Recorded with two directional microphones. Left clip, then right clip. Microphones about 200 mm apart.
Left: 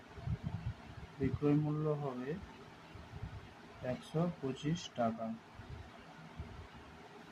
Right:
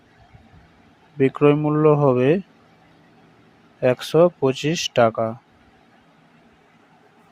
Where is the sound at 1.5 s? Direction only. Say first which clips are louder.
Right 19 dB; 50° right (ahead or behind).